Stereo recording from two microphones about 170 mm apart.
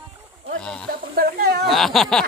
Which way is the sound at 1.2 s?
75° right (ahead or behind).